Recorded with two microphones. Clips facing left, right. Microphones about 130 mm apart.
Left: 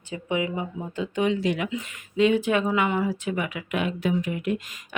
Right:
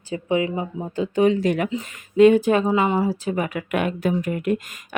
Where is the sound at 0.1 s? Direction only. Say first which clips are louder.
Right 5 dB; 35° right (ahead or behind).